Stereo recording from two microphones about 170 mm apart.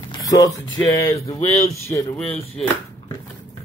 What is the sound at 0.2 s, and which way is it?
Music, 20° left (ahead or behind).